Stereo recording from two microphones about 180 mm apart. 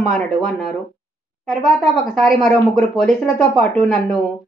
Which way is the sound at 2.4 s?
5° left (ahead or behind).